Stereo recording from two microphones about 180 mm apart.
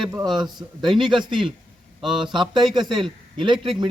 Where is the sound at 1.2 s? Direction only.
25° right (ahead or behind).